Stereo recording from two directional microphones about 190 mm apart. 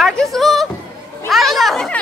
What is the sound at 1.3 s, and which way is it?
Chatter, centre (ahead or behind).